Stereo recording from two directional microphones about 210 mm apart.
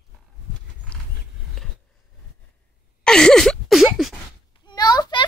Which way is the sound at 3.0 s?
5° left (ahead or behind).